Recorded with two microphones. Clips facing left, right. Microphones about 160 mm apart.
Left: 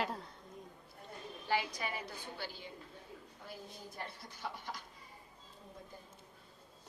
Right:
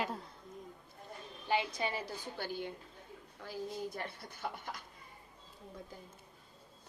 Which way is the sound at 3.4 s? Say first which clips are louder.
Right 11 dB; 80° right.